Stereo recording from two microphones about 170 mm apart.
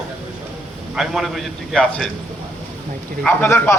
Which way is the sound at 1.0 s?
Centre (ahead or behind).